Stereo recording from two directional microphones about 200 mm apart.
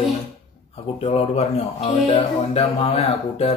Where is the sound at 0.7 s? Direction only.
30° left (ahead or behind).